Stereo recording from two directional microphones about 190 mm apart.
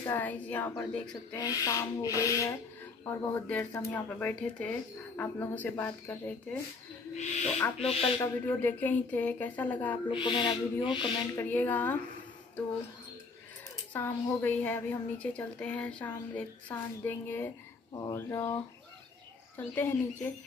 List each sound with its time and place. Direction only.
0.0 s a woman's voice: 10° left (ahead or behind)
1.1 s a woman's voice: 20° left (ahead or behind)
7.2 s speech: 35° left (ahead or behind)
8.5 s a woman's voice: 10° left (ahead or behind)
10.0 s owl: 25° left (ahead or behind)
11.3 s a woman's voice: 10° left (ahead or behind)
13.9 s a woman's voice: 10° left (ahead or behind)